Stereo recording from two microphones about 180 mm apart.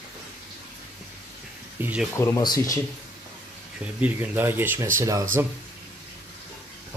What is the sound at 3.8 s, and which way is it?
Speech, 10° right (ahead or behind).